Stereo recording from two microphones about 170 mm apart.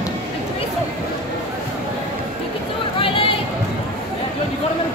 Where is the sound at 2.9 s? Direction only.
35° left (ahead or behind).